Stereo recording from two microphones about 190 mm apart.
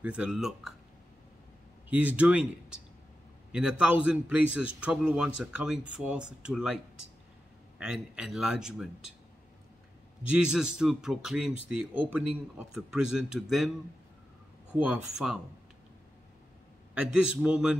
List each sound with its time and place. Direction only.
0.0 s a man's voice: 5° right (ahead or behind)
1.9 s a man's voice: 5° right (ahead or behind)
7.8 s a man's voice: 5° right (ahead or behind)
10.3 s a man's voice: 5° right (ahead or behind)
14.8 s a man's voice: 5° right (ahead or behind)
16.9 s a man's voice: 5° right (ahead or behind)